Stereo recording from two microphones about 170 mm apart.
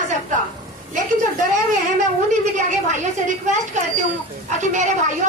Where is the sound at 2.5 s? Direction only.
45° right (ahead or behind).